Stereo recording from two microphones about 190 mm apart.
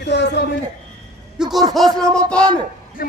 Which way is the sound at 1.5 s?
Centre (ahead or behind).